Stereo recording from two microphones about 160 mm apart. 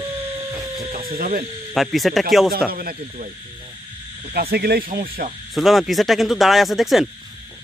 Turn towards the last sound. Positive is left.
turn(degrees=0)  # may be behind; listen again after turning